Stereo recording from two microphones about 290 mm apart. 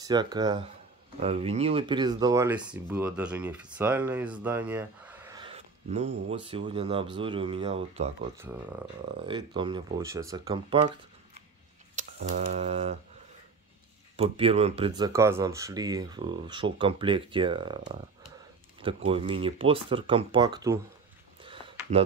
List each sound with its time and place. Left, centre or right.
0.0 s speech: centre
9.2 s speech: centre
11.9 s speech: right
14.1 s speech: right
19.0 s speech: centre
21.4 s a sound: centre